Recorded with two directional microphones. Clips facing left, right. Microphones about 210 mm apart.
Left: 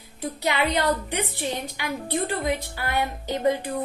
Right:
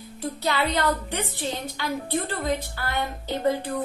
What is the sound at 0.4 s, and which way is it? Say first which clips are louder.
A woman's voice: left 1 dB; 15° left (ahead or behind).